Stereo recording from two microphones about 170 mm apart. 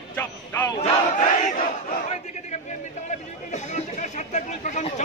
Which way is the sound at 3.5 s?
45° left (ahead or behind).